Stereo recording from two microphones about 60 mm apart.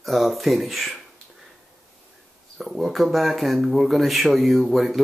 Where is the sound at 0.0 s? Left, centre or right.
Centre.